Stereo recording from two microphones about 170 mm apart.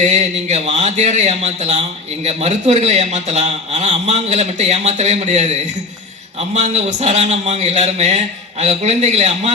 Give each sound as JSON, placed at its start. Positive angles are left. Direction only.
{"t": 0.0, "sound": "a man's voice", "side_deg": -40}